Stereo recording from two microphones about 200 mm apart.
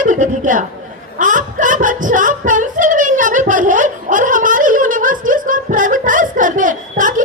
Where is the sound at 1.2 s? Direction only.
40° right (ahead or behind).